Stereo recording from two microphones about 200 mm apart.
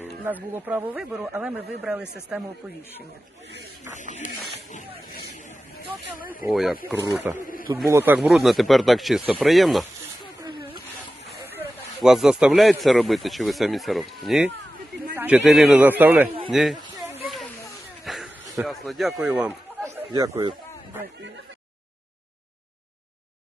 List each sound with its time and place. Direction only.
0.3 s speech: 10° right (ahead or behind)
6.1 s speech: 45° left (ahead or behind)
6.4 s speech: centre (ahead or behind)
7.0 s speech: 15° right (ahead or behind)
12.0 s speech: centre (ahead or behind)
17.2 s snake: centre (ahead or behind)
18.0 s a sound: centre (ahead or behind)
18.4 s a sound: 15° right (ahead or behind)
18.7 s speech: centre (ahead or behind); by 20.5 s 15° right (ahead or behind)